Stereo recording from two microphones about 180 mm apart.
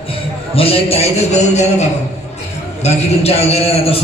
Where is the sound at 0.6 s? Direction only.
30° left (ahead or behind).